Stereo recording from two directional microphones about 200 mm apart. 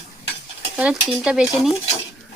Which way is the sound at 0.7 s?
5° right (ahead or behind).